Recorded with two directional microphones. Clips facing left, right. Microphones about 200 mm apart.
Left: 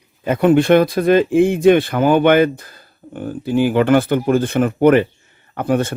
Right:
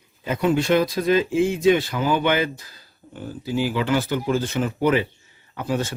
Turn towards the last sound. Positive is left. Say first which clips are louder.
# left 7 dB
turn(degrees=55)  # may be behind; listen again after turning